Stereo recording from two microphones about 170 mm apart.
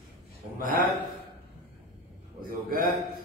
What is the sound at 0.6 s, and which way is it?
Speech, 55° right (ahead or behind).